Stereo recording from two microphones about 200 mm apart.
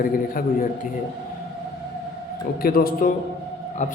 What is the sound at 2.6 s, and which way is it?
A man's voice, 50° left (ahead or behind).